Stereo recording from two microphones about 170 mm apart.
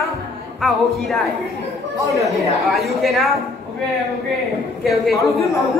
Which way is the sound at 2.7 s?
Centre (ahead or behind).